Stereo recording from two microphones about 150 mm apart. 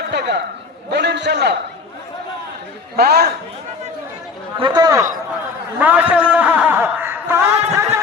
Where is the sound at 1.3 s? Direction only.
90° right.